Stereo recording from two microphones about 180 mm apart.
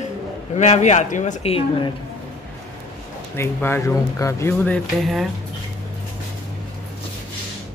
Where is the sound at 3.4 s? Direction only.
15° left (ahead or behind).